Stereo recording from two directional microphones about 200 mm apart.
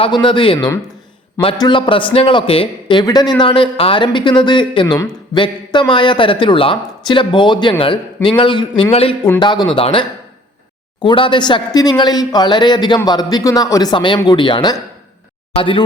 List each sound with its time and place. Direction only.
0.0 s speech: 25° left (ahead or behind)